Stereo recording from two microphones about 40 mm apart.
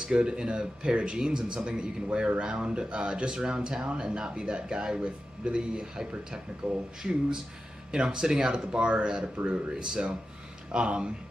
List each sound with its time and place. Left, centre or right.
0.0 s speech: right